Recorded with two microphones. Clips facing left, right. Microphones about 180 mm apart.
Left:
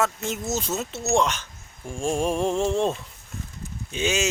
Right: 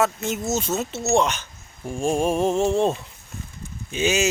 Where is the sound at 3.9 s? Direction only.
5° right (ahead or behind).